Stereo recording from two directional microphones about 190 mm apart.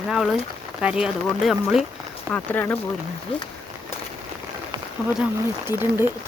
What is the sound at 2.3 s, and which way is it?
Speech, 10° left (ahead or behind).